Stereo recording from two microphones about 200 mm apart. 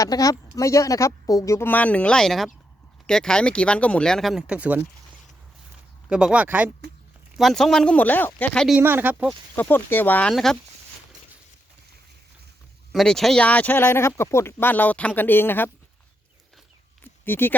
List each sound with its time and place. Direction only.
0.0 s speech: 15° left (ahead or behind); by 4.9 s 5° right (ahead or behind)
6.1 s speech: 5° right (ahead or behind)
8.8 s speech: 10° right (ahead or behind)
9.6 s speech: 10° left (ahead or behind)
12.9 s speech: centre (ahead or behind)
17.0 s a sound: 10° left (ahead or behind)